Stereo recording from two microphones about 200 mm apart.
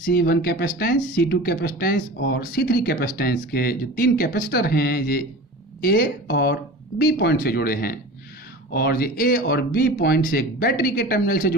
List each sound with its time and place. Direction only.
0.0 s speech: 50° left (ahead or behind)